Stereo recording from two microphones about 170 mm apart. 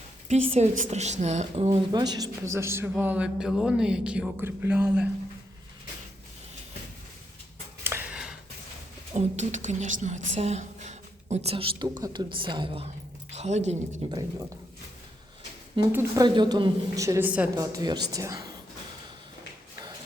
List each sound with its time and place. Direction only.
0.3 s a woman's voice: 40° right (ahead or behind)
1.9 s speech: 25° right (ahead or behind); by 5.0 s 10° right (ahead or behind)
7.9 s a sound: 10° right (ahead or behind)
9.1 s a woman's voice: 40° right (ahead or behind)
15.9 s speech: 15° right (ahead or behind)
16.2 s a woman's voice: 25° right (ahead or behind); by 17.6 s 10° right (ahead or behind)
17.6 s a woman's voice: 20° right (ahead or behind)